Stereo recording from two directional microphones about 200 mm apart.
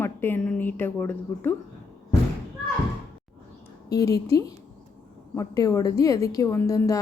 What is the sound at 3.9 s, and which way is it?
A woman's voice, 15° left (ahead or behind).